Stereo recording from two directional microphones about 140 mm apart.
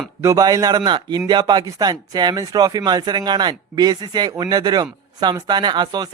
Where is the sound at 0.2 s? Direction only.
25° right (ahead or behind).